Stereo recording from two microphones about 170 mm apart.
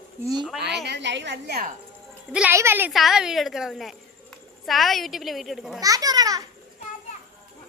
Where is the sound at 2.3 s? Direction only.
5° right (ahead or behind).